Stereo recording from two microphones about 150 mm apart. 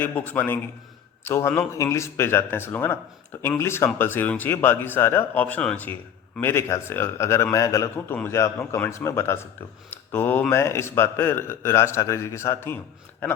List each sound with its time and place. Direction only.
0.0 s speech: 10° left (ahead or behind)